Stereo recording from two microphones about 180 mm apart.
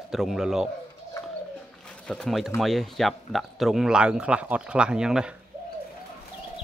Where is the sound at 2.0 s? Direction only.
5° left (ahead or behind).